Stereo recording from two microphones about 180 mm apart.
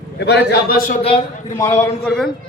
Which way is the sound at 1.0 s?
35° left (ahead or behind).